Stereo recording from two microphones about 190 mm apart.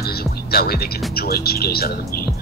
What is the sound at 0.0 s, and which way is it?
Speech, 55° left (ahead or behind).